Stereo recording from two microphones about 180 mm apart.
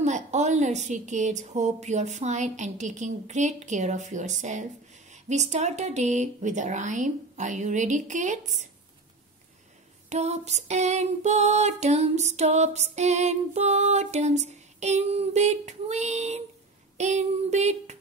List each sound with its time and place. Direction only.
0.0 s female singing: 40° right (ahead or behind)
5.3 s speech: 40° right (ahead or behind)
10.0 s female singing: 35° right (ahead or behind)
16.9 s a sound: 40° right (ahead or behind)